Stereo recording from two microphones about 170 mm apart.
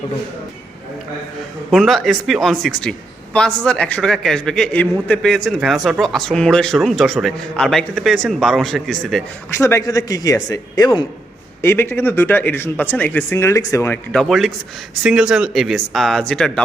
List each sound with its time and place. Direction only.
1.7 s a man's voice: centre (ahead or behind)
9.6 s a man's voice: 15° left (ahead or behind)
14.2 s a man's voice: centre (ahead or behind)